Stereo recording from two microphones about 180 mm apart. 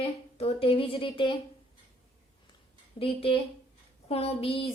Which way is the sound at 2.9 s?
30° left (ahead or behind).